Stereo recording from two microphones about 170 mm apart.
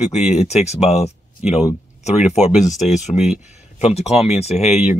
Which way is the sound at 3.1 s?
5° right (ahead or behind).